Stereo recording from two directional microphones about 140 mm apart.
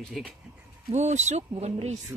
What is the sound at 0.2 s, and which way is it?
Speech, centre (ahead or behind).